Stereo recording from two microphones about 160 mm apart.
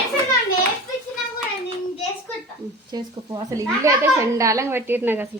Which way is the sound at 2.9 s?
20° right (ahead or behind).